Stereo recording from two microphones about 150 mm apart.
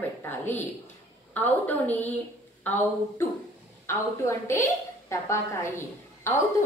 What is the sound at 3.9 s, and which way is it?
A woman's voice, 20° left (ahead or behind).